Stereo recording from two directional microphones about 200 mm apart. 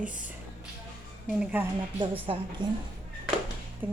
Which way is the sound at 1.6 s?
10° right (ahead or behind).